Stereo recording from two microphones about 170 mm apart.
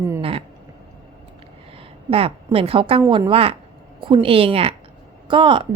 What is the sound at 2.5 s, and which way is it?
A woman's voice, 35° right (ahead or behind).